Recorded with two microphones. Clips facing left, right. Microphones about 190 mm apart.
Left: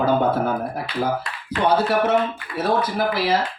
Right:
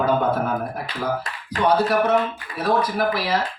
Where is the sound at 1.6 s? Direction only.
25° left (ahead or behind).